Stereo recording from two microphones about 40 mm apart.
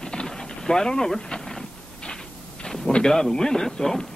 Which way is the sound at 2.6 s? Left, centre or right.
Centre.